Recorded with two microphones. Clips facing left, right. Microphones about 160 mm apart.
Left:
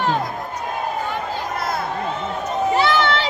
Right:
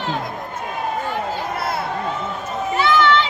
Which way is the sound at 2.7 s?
35° left (ahead or behind).